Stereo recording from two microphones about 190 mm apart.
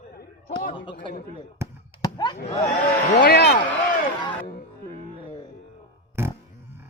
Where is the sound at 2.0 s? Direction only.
20° left (ahead or behind).